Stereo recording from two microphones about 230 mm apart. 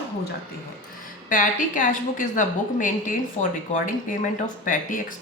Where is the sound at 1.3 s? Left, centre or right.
Left.